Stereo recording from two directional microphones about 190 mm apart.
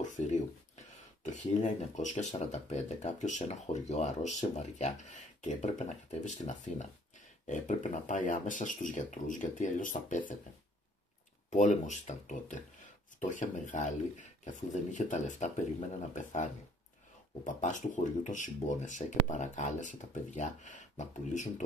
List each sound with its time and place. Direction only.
0.0 s speech: 40° left (ahead or behind)
11.5 s speech: 40° left (ahead or behind)
17.6 s speech: 40° left (ahead or behind)